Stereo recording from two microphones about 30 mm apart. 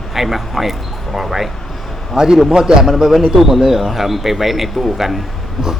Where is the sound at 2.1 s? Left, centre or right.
Right.